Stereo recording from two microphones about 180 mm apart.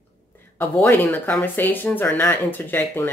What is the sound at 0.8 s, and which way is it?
Speech, 10° left (ahead or behind).